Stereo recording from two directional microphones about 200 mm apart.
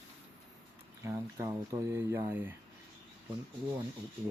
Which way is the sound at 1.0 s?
15° right (ahead or behind).